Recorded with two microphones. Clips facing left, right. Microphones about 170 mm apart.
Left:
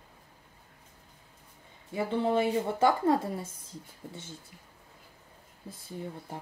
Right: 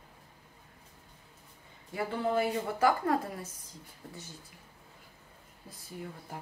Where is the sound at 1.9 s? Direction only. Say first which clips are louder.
Left 3 dB; 25° left (ahead or behind).